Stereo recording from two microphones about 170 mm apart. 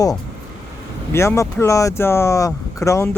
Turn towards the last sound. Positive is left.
turn(degrees=20)  # may be behind; listen again after turning